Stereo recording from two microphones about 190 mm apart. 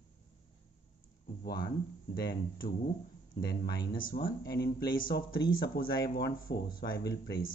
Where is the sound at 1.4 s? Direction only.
55° left (ahead or behind).